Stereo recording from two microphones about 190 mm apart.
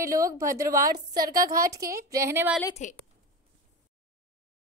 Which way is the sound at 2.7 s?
40° left (ahead or behind).